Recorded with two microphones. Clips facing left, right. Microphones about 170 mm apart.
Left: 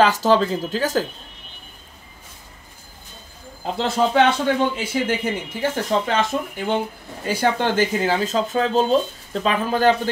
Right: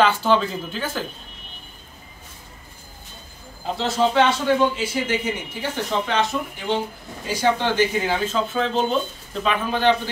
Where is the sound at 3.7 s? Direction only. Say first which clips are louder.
Left 1 dB; 55° left (ahead or behind).